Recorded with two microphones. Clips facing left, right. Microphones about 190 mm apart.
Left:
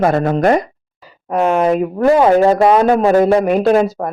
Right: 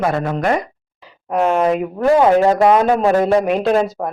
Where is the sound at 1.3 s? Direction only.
Centre (ahead or behind).